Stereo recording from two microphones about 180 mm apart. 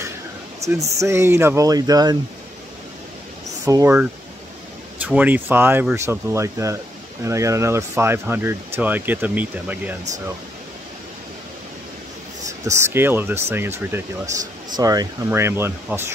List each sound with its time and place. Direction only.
0.6 s speech: 15° right (ahead or behind)
3.6 s speech: 15° right (ahead or behind)
12.6 s speech: 15° right (ahead or behind)